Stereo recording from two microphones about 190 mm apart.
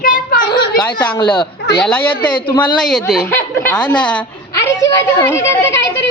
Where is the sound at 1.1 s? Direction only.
25° left (ahead or behind).